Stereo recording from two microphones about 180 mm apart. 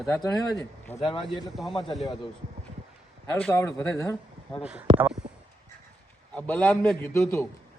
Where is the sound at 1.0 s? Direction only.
25° left (ahead or behind).